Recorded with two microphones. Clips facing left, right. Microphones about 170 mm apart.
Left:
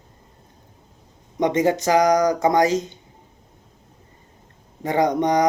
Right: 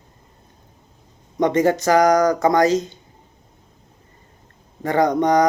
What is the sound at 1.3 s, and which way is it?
Speech, 15° left (ahead or behind).